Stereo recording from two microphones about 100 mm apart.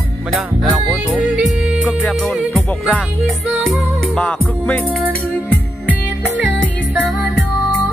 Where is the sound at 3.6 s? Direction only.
10° left (ahead or behind).